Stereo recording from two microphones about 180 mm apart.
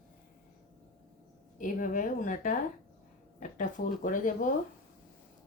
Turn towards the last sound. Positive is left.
turn(degrees=45)  # may be behind; listen again after turning